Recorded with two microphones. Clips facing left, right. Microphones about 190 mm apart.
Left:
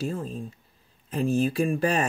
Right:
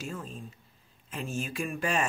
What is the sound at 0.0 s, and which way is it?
Speech, 35° left (ahead or behind).